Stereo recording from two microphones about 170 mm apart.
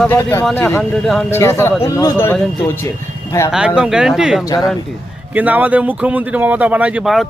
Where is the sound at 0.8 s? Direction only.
Centre (ahead or behind).